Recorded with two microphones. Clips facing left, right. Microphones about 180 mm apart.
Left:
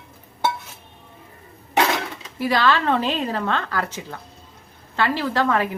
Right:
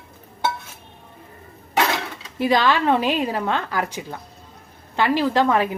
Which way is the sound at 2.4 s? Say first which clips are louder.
Right 1 dB; 20° right (ahead or behind).